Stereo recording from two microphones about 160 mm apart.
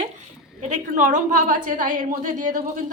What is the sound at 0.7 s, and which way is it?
A woman's voice, 50° right (ahead or behind).